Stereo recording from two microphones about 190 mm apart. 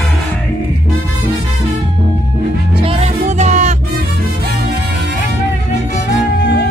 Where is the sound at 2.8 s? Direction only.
30° right (ahead or behind).